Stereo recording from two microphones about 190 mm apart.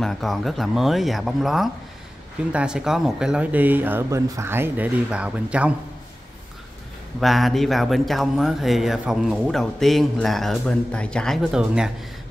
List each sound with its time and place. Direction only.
0.0 s speech: centre (ahead or behind)
7.2 s speech: centre (ahead or behind)